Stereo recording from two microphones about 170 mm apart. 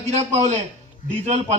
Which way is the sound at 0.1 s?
40° right (ahead or behind).